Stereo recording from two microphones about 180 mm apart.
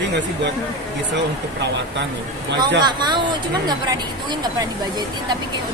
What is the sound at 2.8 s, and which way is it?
Speech, 25° right (ahead or behind).